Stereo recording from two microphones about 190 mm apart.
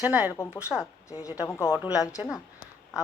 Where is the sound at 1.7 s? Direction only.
5° right (ahead or behind).